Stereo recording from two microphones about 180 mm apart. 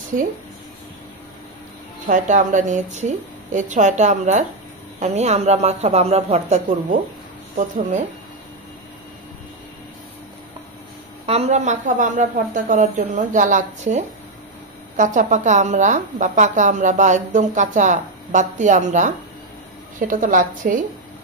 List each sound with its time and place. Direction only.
2.0 s a woman's voice: 45° right (ahead or behind)
11.2 s a woman's voice: 35° right (ahead or behind)